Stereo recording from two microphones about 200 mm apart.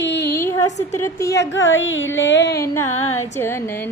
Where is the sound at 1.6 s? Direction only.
75° left (ahead or behind).